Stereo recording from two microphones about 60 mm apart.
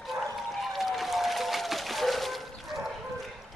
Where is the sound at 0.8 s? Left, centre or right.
Centre.